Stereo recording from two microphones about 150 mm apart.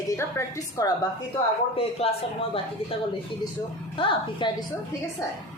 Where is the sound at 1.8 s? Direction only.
40° left (ahead or behind).